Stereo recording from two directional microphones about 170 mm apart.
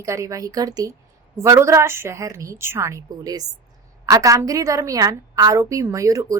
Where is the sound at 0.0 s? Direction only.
20° right (ahead or behind).